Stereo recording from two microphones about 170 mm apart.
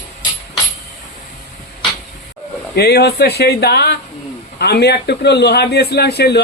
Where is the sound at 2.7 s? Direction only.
70° left (ahead or behind).